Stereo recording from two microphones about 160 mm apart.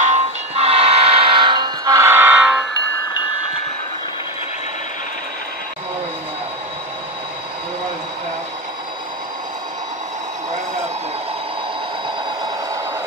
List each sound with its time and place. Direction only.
0.0 s train: 45° right (ahead or behind); by 2.6 s 5° right (ahead or behind)